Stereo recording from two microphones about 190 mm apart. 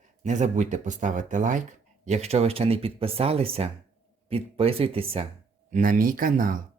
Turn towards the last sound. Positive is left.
turn(degrees=-45)  # may be behind; listen again after turning